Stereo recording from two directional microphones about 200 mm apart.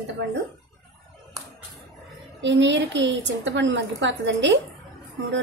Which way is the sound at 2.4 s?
65° right (ahead or behind).